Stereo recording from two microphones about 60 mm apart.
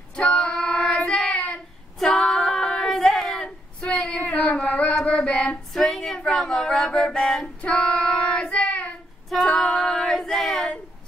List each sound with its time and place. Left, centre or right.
0.1 s child singing: centre
2.0 s female singing: centre
3.9 s singing: centre
5.1 s female singing: centre
5.7 s a sound: centre
7.6 s child singing: centre
9.3 s female singing: centre